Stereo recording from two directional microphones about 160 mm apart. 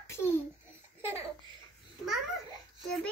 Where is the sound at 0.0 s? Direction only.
15° left (ahead or behind).